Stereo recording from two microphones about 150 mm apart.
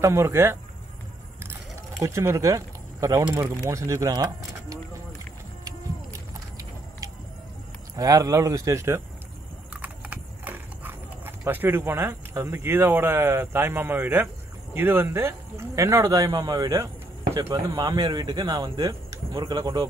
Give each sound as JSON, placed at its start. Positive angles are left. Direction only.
{"t": 0.0, "sound": "speech", "side_deg": -20}
{"t": 2.0, "sound": "speech", "side_deg": -20}
{"t": 7.9, "sound": "speech", "side_deg": -25}